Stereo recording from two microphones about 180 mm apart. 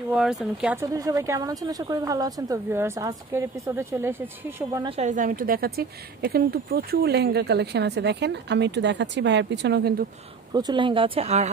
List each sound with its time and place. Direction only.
0.1 s speech: 5° right (ahead or behind)
0.7 s speech: 20° right (ahead or behind)
4.8 s a woman's voice: 35° right (ahead or behind); by 10.0 s 65° right (ahead or behind)
10.5 s speech: 25° right (ahead or behind)